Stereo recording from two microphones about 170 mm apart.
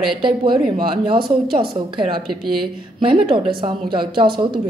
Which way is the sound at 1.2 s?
65° right (ahead or behind).